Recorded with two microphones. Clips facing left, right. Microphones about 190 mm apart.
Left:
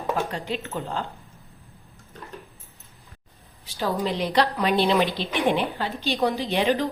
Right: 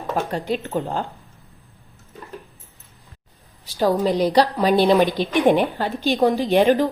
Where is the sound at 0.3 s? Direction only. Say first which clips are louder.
Right 6 dB; 45° right (ahead or behind).